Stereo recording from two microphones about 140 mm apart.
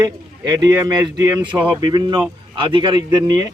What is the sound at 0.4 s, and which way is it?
Speech, 25° right (ahead or behind).